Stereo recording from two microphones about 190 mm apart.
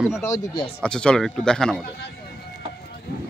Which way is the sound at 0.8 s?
5° left (ahead or behind).